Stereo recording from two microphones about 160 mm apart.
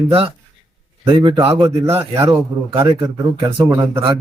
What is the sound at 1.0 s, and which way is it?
Speech, 35° right (ahead or behind).